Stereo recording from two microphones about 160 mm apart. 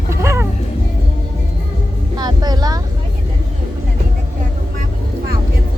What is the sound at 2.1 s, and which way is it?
Vehicle, 25° right (ahead or behind).